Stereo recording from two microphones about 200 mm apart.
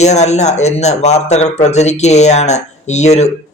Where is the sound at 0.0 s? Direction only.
35° left (ahead or behind).